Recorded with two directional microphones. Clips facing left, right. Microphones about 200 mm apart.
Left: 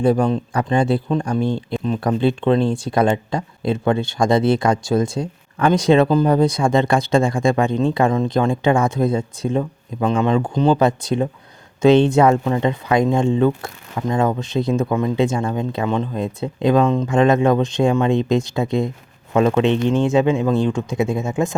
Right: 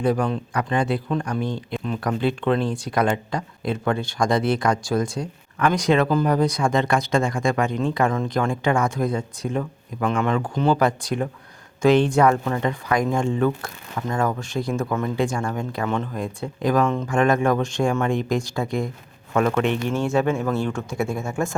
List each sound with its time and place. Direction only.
0.0 s speech: 30° left (ahead or behind)